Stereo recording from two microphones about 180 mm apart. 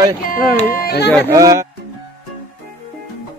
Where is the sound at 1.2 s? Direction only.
20° right (ahead or behind).